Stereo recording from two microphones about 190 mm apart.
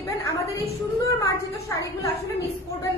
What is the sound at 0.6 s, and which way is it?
Speech, 15° left (ahead or behind).